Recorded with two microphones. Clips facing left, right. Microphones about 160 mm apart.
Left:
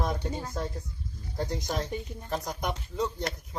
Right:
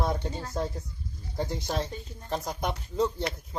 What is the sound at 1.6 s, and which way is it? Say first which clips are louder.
Speech: right 2 dB; 25° right (ahead or behind).